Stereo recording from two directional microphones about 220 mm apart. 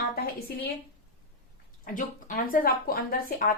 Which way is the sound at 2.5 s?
40° left (ahead or behind).